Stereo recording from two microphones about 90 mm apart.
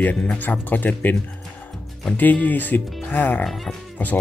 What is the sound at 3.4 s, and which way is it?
Speech, centre (ahead or behind).